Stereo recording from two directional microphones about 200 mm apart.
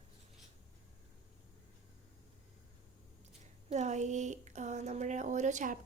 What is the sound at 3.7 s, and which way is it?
Speech, 35° right (ahead or behind).